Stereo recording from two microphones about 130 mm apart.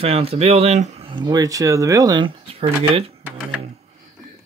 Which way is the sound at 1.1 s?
35° right (ahead or behind).